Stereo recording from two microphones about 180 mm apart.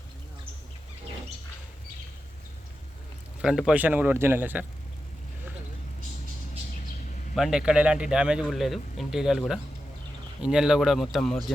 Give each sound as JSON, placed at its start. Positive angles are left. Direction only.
{"t": 3.4, "sound": "speech", "side_deg": 0}
{"t": 7.3, "sound": "speech", "side_deg": -5}